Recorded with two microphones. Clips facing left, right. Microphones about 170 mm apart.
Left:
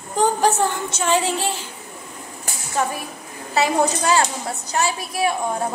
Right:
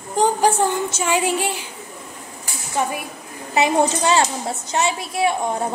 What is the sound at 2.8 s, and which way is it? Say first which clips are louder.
A woman's voice: even; 20° right (ahead or behind).